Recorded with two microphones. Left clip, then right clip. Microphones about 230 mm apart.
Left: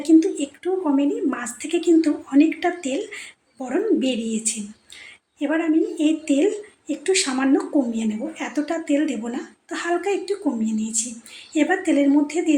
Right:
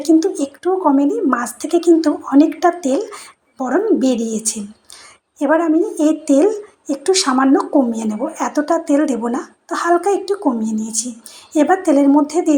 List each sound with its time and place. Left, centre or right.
0.3 s a woman's voice: centre